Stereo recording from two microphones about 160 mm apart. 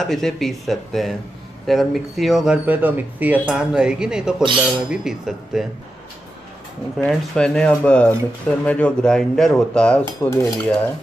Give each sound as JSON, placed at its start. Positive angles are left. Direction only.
{"t": 0.0, "sound": "speech", "side_deg": 0}
{"t": 7.1, "sound": "dishes", "side_deg": 5}